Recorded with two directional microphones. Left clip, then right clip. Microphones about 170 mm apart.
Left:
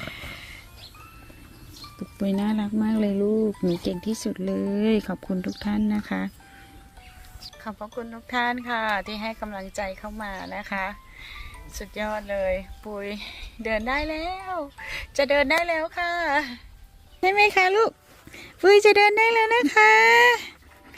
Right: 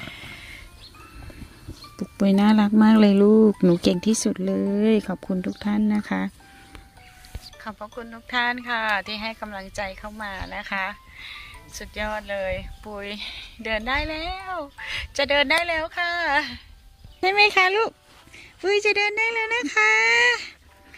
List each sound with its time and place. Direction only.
0.0 s music: 10° right (ahead or behind)
2.0 s speech: 40° right (ahead or behind)
3.3 s speech: 80° right
3.6 s speech: 45° right (ahead or behind)
4.3 s speech: 25° right (ahead or behind)
7.8 s speech: 5° left (ahead or behind)
18.3 s speech: 55° left (ahead or behind); by 20.5 s 30° left (ahead or behind)